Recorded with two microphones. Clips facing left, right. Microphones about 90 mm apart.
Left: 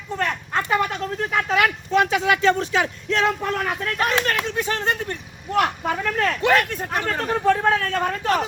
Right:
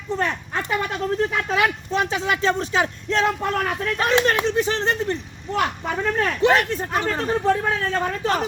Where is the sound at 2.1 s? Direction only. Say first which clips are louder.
Left 3 dB; 30° right (ahead or behind).